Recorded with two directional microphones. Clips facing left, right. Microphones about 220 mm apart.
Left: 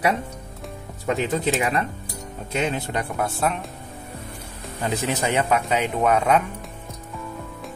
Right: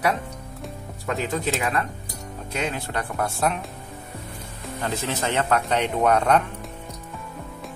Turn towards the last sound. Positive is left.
turn(degrees=5)  # may be behind; listen again after turning